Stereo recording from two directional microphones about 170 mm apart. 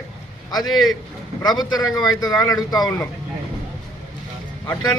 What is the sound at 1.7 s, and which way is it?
Speech, 20° left (ahead or behind).